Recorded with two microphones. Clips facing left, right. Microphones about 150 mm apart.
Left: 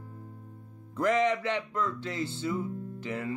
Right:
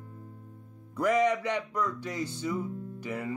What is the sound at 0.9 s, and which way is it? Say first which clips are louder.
Speech: right 1 dB; 10° right (ahead or behind).